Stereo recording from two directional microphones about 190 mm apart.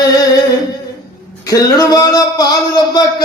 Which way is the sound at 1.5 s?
20° left (ahead or behind).